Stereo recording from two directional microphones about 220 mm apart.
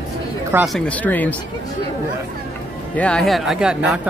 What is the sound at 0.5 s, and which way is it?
Speech, 10° right (ahead or behind).